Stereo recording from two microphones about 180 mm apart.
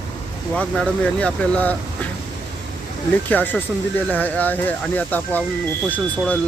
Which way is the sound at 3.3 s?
10° left (ahead or behind).